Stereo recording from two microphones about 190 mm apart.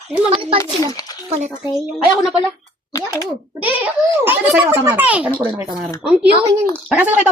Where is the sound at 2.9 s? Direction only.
15° left (ahead or behind).